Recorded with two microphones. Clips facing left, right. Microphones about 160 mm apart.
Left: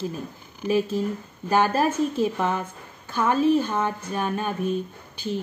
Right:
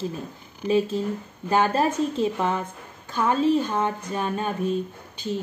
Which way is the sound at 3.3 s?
15° left (ahead or behind).